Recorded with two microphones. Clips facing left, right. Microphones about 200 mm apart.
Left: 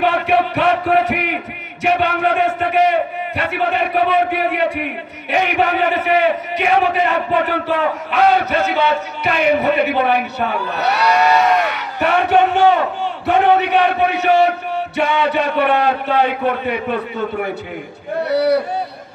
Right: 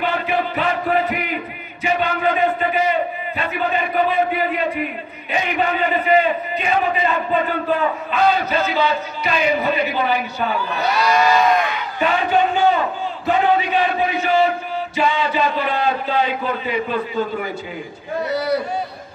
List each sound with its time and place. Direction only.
0.0 s chant: 70° left (ahead or behind)
13.3 s a man's voice: 65° left (ahead or behind)